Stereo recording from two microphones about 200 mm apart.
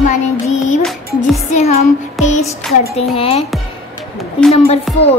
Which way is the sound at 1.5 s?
35° left (ahead or behind).